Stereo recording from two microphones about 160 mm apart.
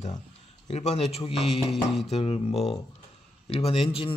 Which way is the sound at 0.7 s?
45° left (ahead or behind).